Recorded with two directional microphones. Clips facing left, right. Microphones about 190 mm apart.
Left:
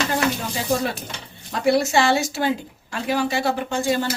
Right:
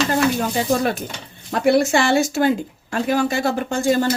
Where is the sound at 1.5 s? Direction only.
55° right (ahead or behind).